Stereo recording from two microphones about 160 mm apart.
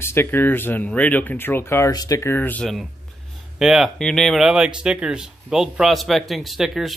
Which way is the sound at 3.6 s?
Centre (ahead or behind).